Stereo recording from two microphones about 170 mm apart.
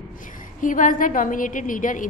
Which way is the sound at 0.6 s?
50° left (ahead or behind).